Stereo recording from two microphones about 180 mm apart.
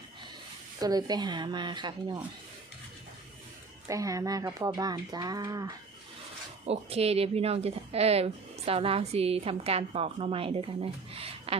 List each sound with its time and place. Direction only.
0.8 s speech: 20° right (ahead or behind)
3.8 s speech: 20° right (ahead or behind)
6.7 s speech: 35° right (ahead or behind)